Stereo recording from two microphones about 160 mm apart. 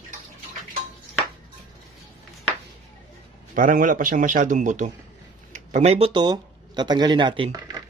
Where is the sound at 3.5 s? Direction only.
55° right (ahead or behind); by 7.8 s 25° right (ahead or behind).